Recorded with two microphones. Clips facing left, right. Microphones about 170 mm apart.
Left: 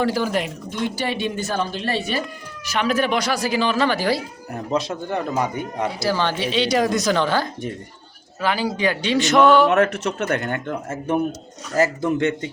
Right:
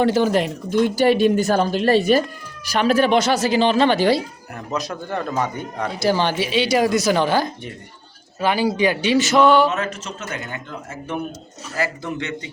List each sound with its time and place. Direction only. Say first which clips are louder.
0.0 s speech: right 4 dB; 25° right (ahead or behind)
0.8 s speech: right 9 dB; 45° right (ahead or behind)
2.7 s speech: right 4 dB; 30° right (ahead or behind)
4.5 s speech: left 3 dB; 30° left (ahead or behind)
5.0 s speech: left 1 dB; 15° left (ahead or behind)
6.0 s speech: right 4 dB; 20° right (ahead or behind); by 9.6 s centre (ahead or behind)
9.6 s speech: left 6 dB; 60° left (ahead or behind)